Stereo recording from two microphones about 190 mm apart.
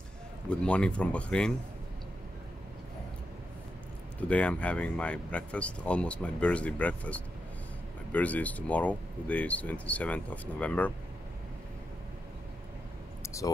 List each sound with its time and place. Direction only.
0.5 s speech: 5° left (ahead or behind)
4.2 s speech: 5° left (ahead or behind)
13.2 s a sound: 15° left (ahead or behind)